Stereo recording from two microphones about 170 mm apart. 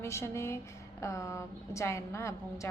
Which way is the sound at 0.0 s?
15° left (ahead or behind).